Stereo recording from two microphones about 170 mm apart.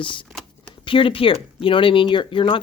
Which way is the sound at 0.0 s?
30° left (ahead or behind).